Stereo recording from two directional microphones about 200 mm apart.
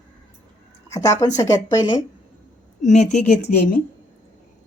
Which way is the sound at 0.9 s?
15° left (ahead or behind).